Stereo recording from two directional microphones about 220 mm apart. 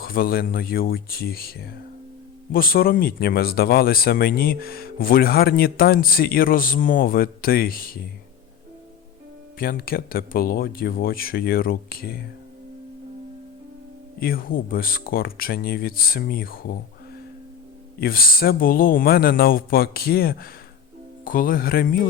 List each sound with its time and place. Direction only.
0.0 s speech: 40° left (ahead or behind)
9.6 s speech: 40° left (ahead or behind)
14.2 s speech: 40° left (ahead or behind)
18.0 s speech: 40° left (ahead or behind)